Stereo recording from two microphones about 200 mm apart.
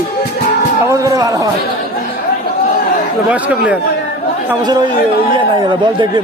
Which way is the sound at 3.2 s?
5° right (ahead or behind).